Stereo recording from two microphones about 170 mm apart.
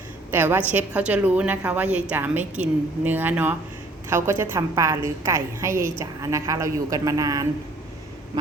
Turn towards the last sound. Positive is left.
turn(degrees=-20)  # may be behind; listen again after turning